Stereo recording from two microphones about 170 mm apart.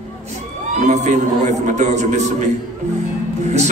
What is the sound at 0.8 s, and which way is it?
A man's voice, 45° right (ahead or behind).